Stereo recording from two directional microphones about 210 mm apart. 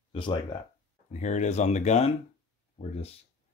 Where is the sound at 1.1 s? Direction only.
35° left (ahead or behind).